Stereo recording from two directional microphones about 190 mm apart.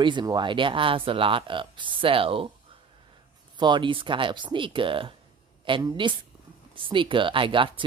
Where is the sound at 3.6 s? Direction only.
25° right (ahead or behind).